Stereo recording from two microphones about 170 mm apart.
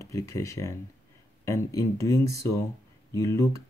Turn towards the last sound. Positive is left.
turn(degrees=20)  # may be behind; listen again after turning